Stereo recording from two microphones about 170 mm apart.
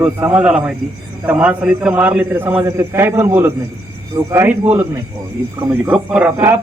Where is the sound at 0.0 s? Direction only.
10° right (ahead or behind).